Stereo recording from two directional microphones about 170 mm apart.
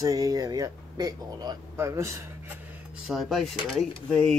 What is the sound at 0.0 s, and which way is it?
Speech, 20° right (ahead or behind).